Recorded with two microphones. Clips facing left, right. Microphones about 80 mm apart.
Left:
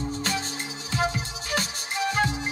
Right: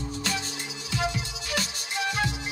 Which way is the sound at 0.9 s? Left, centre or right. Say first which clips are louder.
Left 2 dB; left.